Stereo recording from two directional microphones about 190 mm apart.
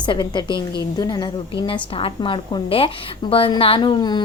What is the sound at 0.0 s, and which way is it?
A woman's voice, 25° left (ahead or behind).